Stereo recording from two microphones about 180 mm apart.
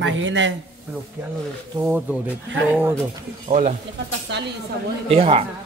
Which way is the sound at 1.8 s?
10° right (ahead or behind).